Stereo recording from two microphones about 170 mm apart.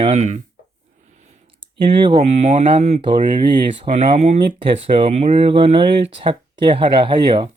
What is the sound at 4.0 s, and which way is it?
Speech, 40° right (ahead or behind).